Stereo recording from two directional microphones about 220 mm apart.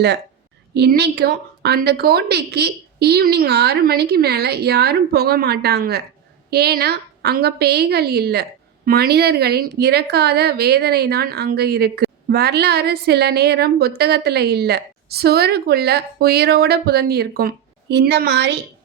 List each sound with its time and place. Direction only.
0.7 s a woman's voice: 45° right (ahead or behind)